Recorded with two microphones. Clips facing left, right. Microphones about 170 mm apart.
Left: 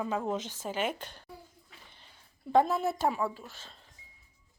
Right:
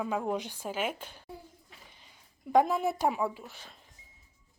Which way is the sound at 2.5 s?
15° right (ahead or behind).